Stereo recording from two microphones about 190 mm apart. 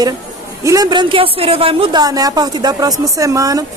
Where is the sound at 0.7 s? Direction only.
20° right (ahead or behind).